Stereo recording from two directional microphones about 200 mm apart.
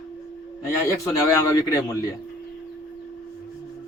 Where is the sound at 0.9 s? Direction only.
15° left (ahead or behind).